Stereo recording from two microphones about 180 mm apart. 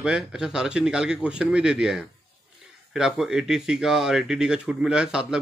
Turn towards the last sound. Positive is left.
turn(degrees=-5)  # may be behind; listen again after turning